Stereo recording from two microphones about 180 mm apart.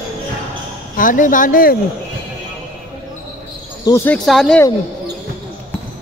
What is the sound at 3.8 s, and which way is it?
Speech, 15° left (ahead or behind).